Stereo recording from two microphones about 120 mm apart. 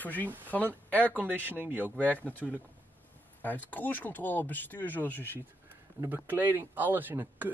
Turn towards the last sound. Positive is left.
turn(degrees=-15)  # may be behind; listen again after turning